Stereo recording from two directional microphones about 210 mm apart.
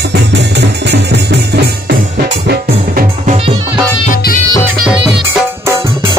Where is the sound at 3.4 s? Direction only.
25° right (ahead or behind).